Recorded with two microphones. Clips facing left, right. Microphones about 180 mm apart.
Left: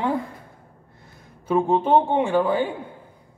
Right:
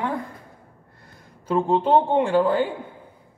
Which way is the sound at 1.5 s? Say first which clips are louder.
Left 1 dB; 15° left (ahead or behind).